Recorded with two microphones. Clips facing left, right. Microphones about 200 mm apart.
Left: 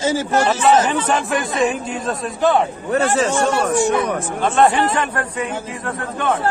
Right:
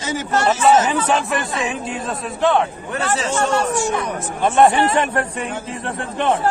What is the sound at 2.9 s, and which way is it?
Speech, 45° left (ahead or behind).